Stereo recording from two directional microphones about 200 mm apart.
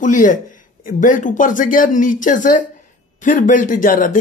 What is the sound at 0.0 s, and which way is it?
Speech, 40° left (ahead or behind).